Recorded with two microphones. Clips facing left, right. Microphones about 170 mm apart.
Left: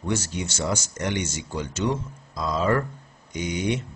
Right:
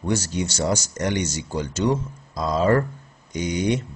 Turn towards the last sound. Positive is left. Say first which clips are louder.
# right 3 dB
turn(degrees=-40)  # may be behind; listen again after turning